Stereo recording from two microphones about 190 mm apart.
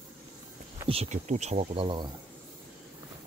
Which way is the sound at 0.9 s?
35° right (ahead or behind).